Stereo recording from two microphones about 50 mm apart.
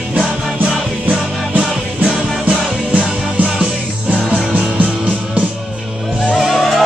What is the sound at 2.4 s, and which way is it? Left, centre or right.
Music, right.